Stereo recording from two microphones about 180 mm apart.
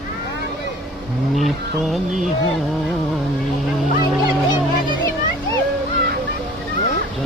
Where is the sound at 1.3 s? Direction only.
Centre (ahead or behind).